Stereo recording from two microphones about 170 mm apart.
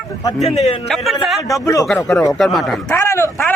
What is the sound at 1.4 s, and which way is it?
Speech, 20° left (ahead or behind).